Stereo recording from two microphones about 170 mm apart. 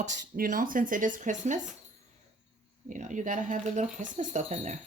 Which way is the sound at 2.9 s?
45° right (ahead or behind).